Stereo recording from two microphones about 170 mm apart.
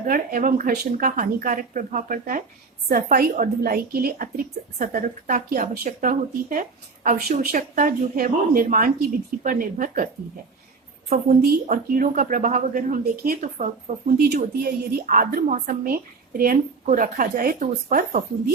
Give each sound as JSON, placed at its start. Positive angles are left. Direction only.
{"t": 0.0, "sound": "a woman's voice", "side_deg": -55}
{"t": 4.8, "sound": "speech", "side_deg": -50}
{"t": 11.3, "sound": "speech", "side_deg": -55}
{"t": 13.4, "sound": "speech", "side_deg": -45}
{"t": 14.2, "sound": "a woman's voice", "side_deg": -65}